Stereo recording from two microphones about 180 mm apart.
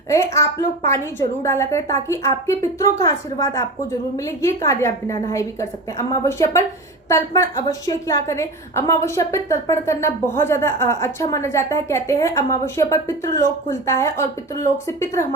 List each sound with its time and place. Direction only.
0.1 s a woman's voice: 15° left (ahead or behind)